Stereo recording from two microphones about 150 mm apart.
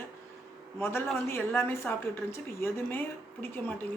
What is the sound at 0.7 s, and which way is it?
A woman's voice, 15° left (ahead or behind).